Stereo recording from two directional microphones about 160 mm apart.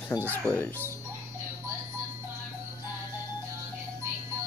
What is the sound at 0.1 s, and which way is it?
Speech, 25° left (ahead or behind).